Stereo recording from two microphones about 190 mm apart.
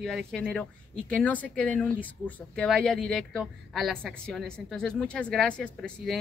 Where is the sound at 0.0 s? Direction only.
Centre (ahead or behind).